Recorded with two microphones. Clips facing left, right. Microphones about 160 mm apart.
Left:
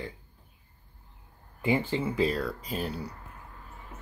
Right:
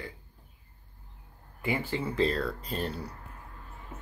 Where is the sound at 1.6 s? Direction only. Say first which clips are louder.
Left 4 dB; 20° left (ahead or behind).